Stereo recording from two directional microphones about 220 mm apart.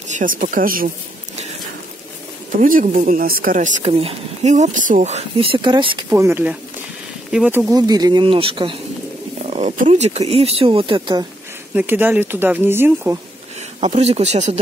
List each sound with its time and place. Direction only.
0.1 s speech: 35° right (ahead or behind)
2.5 s speech: 35° right (ahead or behind); by 6.0 s 20° right (ahead or behind)
6.0 s speech: 10° right (ahead or behind)
11.7 s speech: 10° right (ahead or behind)
13.7 s speech: 30° right (ahead or behind)